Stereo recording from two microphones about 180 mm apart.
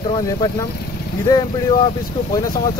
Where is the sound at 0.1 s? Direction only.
20° left (ahead or behind).